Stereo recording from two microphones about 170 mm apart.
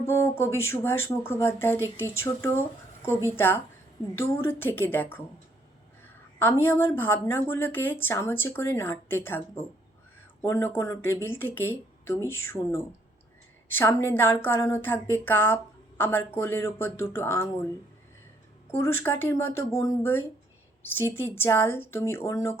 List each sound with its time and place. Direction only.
0.0 s a woman's voice: 15° left (ahead or behind)
6.4 s a woman's voice: 10° left (ahead or behind)
10.4 s a woman's voice: 15° left (ahead or behind)
18.7 s a woman's voice: 15° left (ahead or behind)